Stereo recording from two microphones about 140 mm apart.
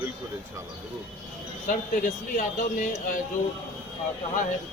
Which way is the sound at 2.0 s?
65° left (ahead or behind).